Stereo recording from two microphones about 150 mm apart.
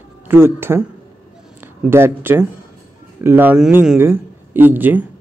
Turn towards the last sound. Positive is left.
turn(degrees=-10)  # may be behind; listen again after turning